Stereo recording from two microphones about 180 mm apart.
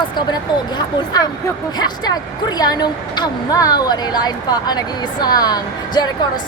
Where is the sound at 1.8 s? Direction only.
20° left (ahead or behind).